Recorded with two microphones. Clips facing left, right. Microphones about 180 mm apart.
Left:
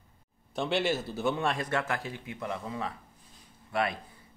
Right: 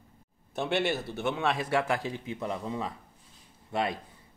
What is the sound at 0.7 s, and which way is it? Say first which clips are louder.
Speech: even; 60° right (ahead or behind).